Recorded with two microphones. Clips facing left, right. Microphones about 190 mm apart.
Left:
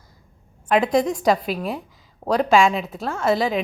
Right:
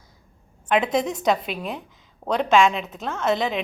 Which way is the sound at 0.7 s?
Centre (ahead or behind).